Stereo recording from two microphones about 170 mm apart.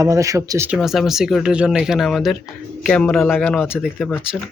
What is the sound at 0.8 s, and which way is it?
Speech, centre (ahead or behind).